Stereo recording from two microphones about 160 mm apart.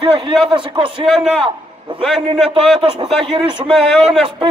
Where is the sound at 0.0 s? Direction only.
35° right (ahead or behind).